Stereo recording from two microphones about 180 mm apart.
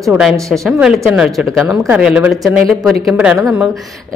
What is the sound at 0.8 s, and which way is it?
Speech, 5° right (ahead or behind).